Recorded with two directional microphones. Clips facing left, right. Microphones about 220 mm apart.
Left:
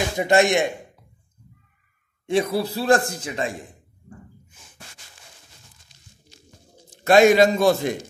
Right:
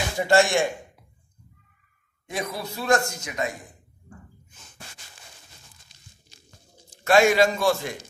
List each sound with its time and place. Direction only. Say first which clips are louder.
0.2 s a man's voice: left 2 dB; 20° left (ahead or behind)
2.2 s a man's voice: left 10 dB; 30° left (ahead or behind)
7.1 s a man's voice: left 4 dB; 20° left (ahead or behind)